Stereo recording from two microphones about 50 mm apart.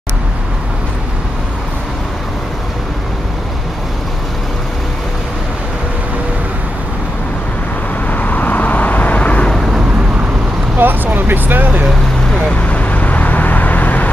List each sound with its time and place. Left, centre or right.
8.1 s vehicle: left
10.8 s vehicle: right
12.4 s vehicle: left